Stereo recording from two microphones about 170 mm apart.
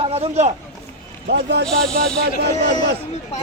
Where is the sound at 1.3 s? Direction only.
80° right.